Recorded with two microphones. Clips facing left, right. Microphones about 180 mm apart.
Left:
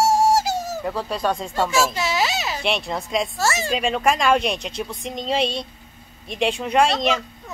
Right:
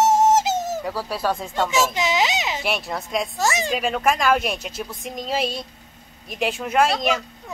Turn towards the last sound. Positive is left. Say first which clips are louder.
# left 1 dB
turn(degrees=0)  # may be behind; listen again after turning